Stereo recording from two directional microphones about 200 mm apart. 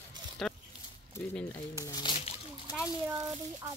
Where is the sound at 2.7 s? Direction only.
10° right (ahead or behind).